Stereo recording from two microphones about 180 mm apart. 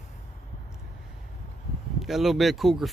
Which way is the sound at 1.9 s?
Centre (ahead or behind).